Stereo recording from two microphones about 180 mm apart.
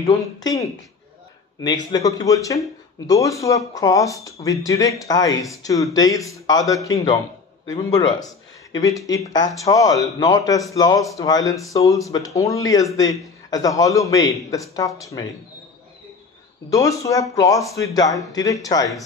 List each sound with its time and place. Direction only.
0.4 s speech: 20° left (ahead or behind)
16.7 s speech: 20° left (ahead or behind)